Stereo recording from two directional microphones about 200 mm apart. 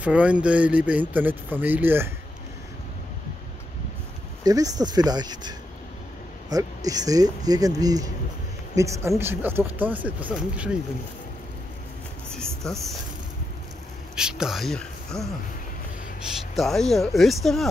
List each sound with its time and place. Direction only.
0.0 s speech: 5° right (ahead or behind)
4.4 s speech: 20° right (ahead or behind)
12.3 s a sound: 5° left (ahead or behind)
14.1 s speech: 5° right (ahead or behind)
16.5 s speech: centre (ahead or behind)